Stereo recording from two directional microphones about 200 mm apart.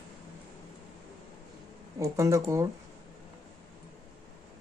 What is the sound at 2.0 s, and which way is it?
Speech, 15° right (ahead or behind).